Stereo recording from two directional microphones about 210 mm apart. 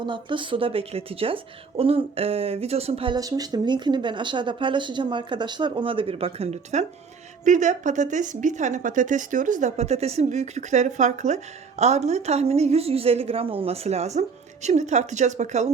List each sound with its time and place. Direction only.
0.0 s speech: 25° right (ahead or behind)